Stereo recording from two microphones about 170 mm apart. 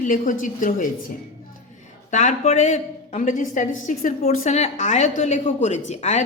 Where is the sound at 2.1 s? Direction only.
45° left (ahead or behind).